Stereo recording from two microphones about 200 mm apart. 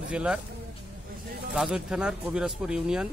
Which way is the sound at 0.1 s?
5° right (ahead or behind).